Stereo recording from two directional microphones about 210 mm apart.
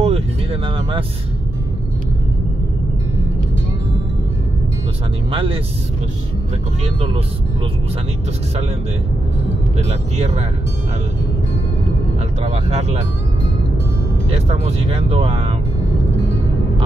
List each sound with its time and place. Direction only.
0.0 s vehicle: 30° right (ahead or behind)
5.3 s speech: 25° right (ahead or behind)
9.8 s speech: 30° right (ahead or behind)
12.4 s speech: 30° right (ahead or behind)
14.3 s speech: 30° right (ahead or behind)